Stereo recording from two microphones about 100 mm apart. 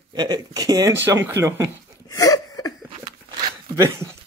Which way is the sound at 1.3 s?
30° right (ahead or behind).